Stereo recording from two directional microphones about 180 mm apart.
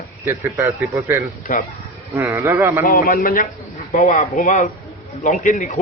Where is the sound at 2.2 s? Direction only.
15° right (ahead or behind).